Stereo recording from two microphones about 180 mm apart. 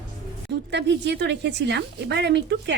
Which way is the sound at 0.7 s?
75° right (ahead or behind).